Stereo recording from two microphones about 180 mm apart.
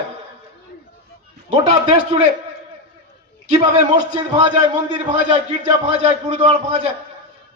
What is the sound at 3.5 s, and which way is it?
A man's voice, 40° right (ahead or behind).